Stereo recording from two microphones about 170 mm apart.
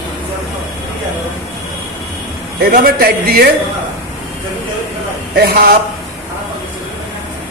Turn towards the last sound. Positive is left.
turn(degrees=-60)  # may be behind; listen again after turning